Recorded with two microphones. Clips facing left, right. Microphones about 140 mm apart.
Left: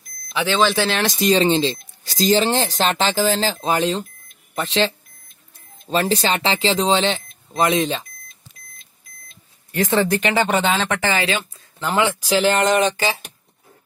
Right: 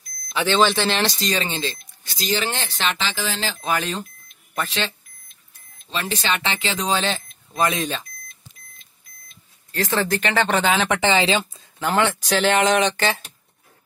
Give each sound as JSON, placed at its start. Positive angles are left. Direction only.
{"t": 0.6, "sound": "speech", "side_deg": 0}
{"t": 1.0, "sound": "speech", "side_deg": 20}
{"t": 2.0, "sound": "speech", "side_deg": 40}
{"t": 9.7, "sound": "speech", "side_deg": 20}
{"t": 10.3, "sound": "speech", "side_deg": 10}
{"t": 10.6, "sound": "speech", "side_deg": -10}
{"t": 11.8, "sound": "speech", "side_deg": 5}